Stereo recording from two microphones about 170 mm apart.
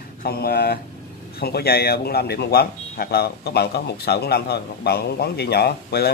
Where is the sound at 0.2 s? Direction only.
65° left (ahead or behind).